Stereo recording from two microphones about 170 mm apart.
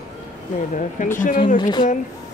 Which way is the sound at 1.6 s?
25° left (ahead or behind).